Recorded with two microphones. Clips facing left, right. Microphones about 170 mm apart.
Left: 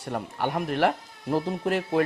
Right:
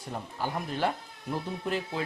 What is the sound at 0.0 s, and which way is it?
Speech, 70° left (ahead or behind).